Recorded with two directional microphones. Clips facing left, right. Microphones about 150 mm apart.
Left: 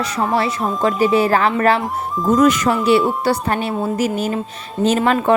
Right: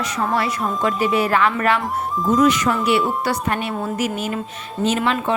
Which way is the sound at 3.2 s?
30° left (ahead or behind).